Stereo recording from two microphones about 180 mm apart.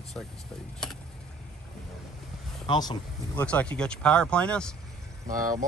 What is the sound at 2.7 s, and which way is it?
Speech, 20° left (ahead or behind).